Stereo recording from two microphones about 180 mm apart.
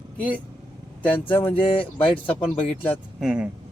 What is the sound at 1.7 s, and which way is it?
Speech, 30° left (ahead or behind).